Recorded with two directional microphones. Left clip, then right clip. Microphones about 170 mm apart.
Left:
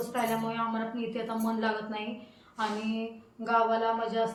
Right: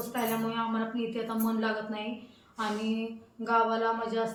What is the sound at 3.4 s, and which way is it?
Speech, 10° left (ahead or behind).